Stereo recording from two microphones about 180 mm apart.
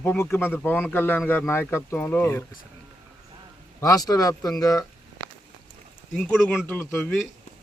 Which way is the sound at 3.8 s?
20° left (ahead or behind).